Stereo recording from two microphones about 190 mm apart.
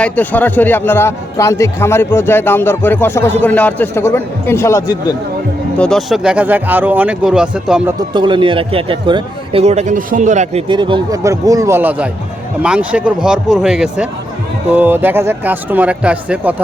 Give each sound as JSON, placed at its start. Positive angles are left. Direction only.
{"t": 0.0, "sound": "a man's voice", "side_deg": 10}
{"t": 5.7, "sound": "speech", "side_deg": 5}
{"t": 7.9, "sound": "speech", "side_deg": -25}
{"t": 10.7, "sound": "speech", "side_deg": -25}